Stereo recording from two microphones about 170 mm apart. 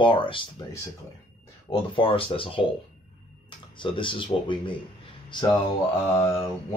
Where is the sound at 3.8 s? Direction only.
30° left (ahead or behind).